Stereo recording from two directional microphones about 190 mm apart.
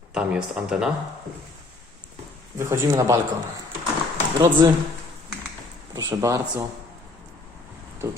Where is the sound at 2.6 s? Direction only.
15° right (ahead or behind).